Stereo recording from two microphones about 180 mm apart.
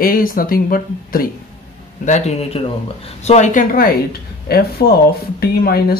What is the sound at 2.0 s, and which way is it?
Speech, 40° left (ahead or behind).